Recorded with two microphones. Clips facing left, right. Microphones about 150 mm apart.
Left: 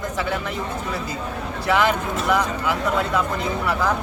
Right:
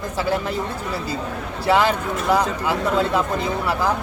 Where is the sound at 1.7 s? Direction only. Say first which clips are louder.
Right 2 dB; 30° right (ahead or behind).